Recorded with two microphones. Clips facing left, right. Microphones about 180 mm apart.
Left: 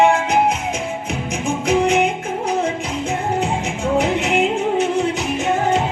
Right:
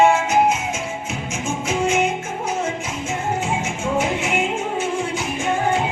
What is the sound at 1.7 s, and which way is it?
Music, 60° left (ahead or behind).